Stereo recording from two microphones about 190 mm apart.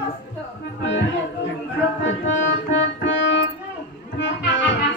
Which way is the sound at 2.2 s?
80° left.